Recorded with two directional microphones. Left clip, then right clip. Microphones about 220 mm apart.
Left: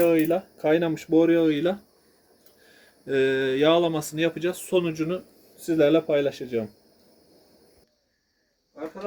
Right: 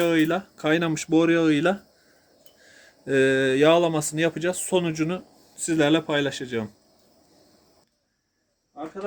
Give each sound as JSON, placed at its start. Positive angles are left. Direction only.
{"t": 0.0, "sound": "speech", "side_deg": -40}
{"t": 2.7, "sound": "speech", "side_deg": -30}